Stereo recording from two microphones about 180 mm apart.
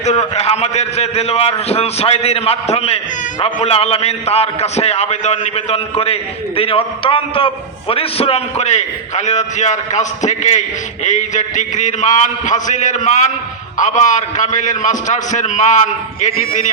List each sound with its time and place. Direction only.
0.0 s a man's voice: 35° left (ahead or behind)